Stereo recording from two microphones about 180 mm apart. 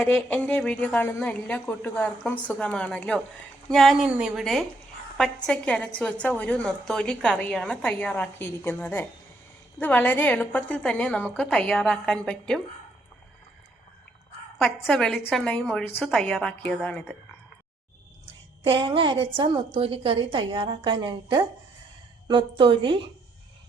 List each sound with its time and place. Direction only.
0.0 s a woman's voice: 10° left (ahead or behind)
14.6 s a woman's voice: centre (ahead or behind)
18.6 s a woman's voice: 30° right (ahead or behind)